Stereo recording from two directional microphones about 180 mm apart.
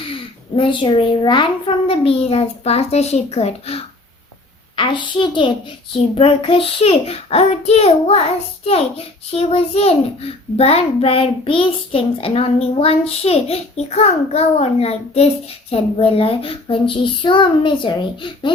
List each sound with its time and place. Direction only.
0.0 s a child's voice: 30° left (ahead or behind)
4.8 s a child's voice: 25° left (ahead or behind)